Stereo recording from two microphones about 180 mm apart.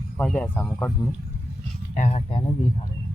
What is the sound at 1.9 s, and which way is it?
Speech, 40° left (ahead or behind).